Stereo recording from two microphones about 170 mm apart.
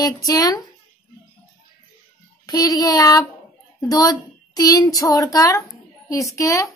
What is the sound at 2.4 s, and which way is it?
A child's voice, 20° left (ahead or behind).